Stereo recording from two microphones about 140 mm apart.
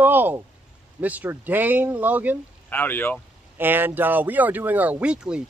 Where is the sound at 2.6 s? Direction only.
15° left (ahead or behind).